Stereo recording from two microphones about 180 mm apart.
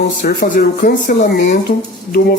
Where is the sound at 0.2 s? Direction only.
60° left (ahead or behind).